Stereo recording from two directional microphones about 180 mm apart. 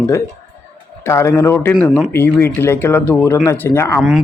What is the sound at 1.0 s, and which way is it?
Speech, 15° left (ahead or behind).